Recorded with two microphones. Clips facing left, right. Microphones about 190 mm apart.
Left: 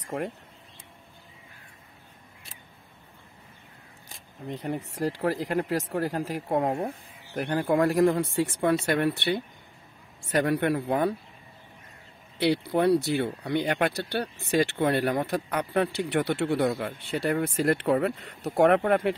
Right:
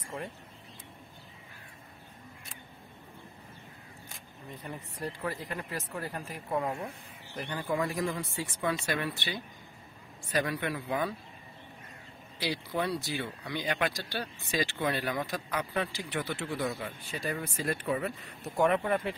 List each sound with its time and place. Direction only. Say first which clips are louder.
0.0 s vehicle: left 8 dB; 75° left (ahead or behind)
4.5 s speech: left 11 dB; 75° left (ahead or behind)
6.6 s speech: left 7 dB; 50° left (ahead or behind)
12.4 s speech: left 9 dB; 60° left (ahead or behind)